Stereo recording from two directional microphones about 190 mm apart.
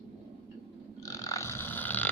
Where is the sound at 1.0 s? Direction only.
20° left (ahead or behind).